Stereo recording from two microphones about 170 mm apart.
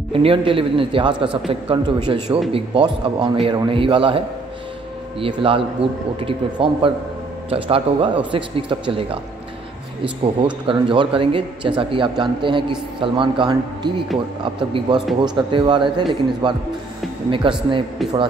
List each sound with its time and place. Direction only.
0.1 s speech: 30° right (ahead or behind)
5.2 s speech: 30° right (ahead or behind)
10.4 s speech: 30° right (ahead or behind)